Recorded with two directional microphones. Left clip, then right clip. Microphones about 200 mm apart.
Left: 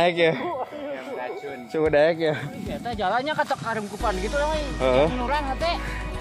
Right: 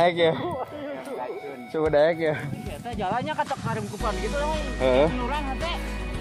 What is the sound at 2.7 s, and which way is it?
Speech, 55° left (ahead or behind).